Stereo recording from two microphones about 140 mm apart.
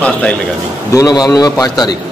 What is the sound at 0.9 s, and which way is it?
A man's voice, 25° left (ahead or behind).